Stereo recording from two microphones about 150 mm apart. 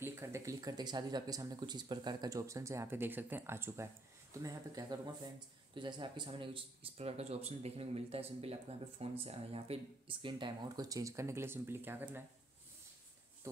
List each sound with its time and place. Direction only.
0.0 s speech: 15° right (ahead or behind)